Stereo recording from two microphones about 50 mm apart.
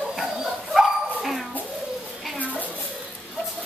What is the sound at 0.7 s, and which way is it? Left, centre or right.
Bow-wow, centre.